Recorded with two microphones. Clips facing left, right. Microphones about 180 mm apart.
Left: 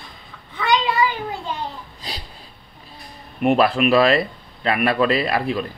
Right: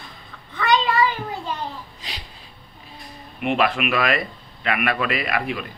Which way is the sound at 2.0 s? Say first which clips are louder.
Left 4 dB; 35° left (ahead or behind).